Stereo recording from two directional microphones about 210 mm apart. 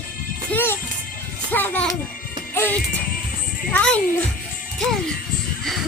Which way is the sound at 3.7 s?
5° left (ahead or behind).